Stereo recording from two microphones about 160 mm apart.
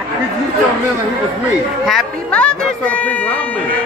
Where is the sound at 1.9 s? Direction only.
5° left (ahead or behind).